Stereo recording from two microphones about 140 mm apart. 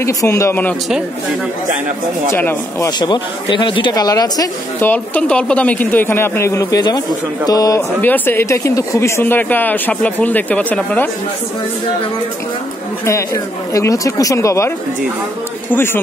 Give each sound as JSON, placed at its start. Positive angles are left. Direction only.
{"t": 0.0, "sound": "speech", "side_deg": 20}
{"t": 2.3, "sound": "speech", "side_deg": 15}
{"t": 3.0, "sound": "speech", "side_deg": 35}
{"t": 4.7, "sound": "speech", "side_deg": 15}
{"t": 8.0, "sound": "speech", "side_deg": 15}
{"t": 13.0, "sound": "speech", "side_deg": 20}
{"t": 15.7, "sound": "speech", "side_deg": 15}